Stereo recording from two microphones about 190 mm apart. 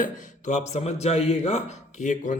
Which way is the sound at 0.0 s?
40° left (ahead or behind).